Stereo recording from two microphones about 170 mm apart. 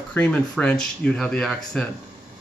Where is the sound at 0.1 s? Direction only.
10° left (ahead or behind).